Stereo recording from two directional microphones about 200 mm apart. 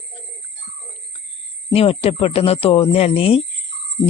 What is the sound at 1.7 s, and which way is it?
Insect, 30° left (ahead or behind).